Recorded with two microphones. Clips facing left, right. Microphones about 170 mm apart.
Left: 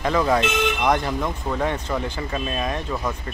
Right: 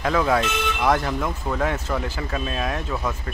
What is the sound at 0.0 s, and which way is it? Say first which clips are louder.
Speech: left 1 dB; centre (ahead or behind).